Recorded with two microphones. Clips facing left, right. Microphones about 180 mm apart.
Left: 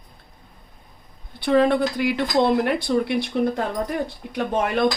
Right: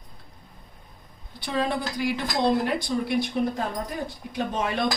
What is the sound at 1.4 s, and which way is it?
Speech, 60° left (ahead or behind).